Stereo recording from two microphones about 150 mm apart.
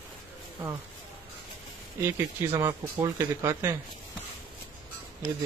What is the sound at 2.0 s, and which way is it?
Speech, 15° right (ahead or behind).